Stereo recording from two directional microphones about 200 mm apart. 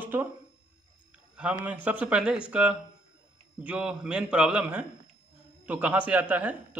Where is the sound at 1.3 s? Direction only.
5° right (ahead or behind).